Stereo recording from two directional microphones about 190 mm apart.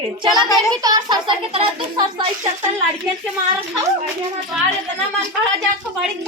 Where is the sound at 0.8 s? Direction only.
20° right (ahead or behind).